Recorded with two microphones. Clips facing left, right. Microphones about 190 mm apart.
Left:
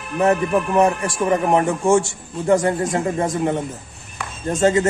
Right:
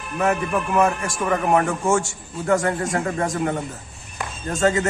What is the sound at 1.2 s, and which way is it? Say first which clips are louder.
A man's voice: left 2 dB; 25° left (ahead or behind).